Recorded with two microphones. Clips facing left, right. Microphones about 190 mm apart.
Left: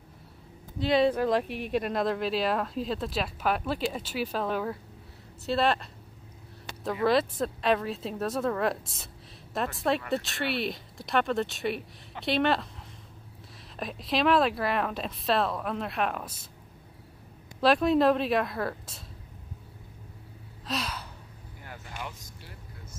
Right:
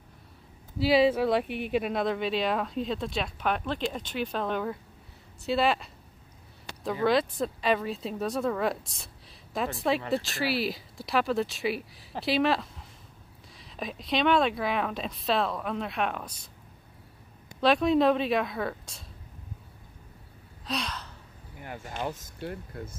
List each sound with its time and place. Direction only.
0.7 s speech: 5° right (ahead or behind)
17.6 s speech: centre (ahead or behind)
20.6 s gasp: 5° left (ahead or behind)
22.4 s speech: 60° right (ahead or behind)